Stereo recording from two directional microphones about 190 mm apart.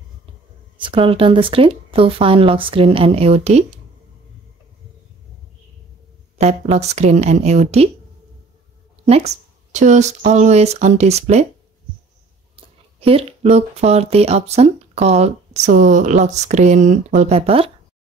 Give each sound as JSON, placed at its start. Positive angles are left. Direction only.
{"t": 0.8, "sound": "speech", "side_deg": -30}
{"t": 6.3, "sound": "speech", "side_deg": -35}
{"t": 9.0, "sound": "speech", "side_deg": -35}
{"t": 12.5, "sound": "speech", "side_deg": -30}